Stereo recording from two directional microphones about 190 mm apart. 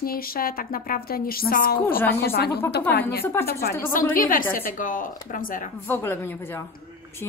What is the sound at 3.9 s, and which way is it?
A woman's voice, 45° left (ahead or behind).